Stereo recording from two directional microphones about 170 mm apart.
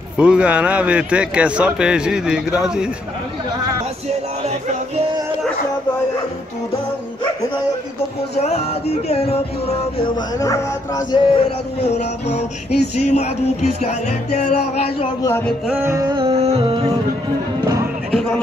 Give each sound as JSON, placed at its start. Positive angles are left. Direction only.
{"t": 0.2, "sound": "speech", "side_deg": -5}
{"t": 8.4, "sound": "music", "side_deg": 40}
{"t": 10.4, "sound": "speech", "side_deg": 20}
{"t": 11.8, "sound": "music", "side_deg": 40}
{"t": 15.2, "sound": "music", "side_deg": 10}
{"t": 15.6, "sound": "music", "side_deg": -10}